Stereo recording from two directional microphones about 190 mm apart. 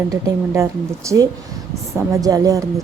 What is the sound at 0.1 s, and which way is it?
A woman's voice, 15° right (ahead or behind).